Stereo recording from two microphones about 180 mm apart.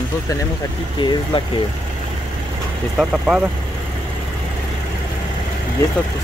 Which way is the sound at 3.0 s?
5° right (ahead or behind).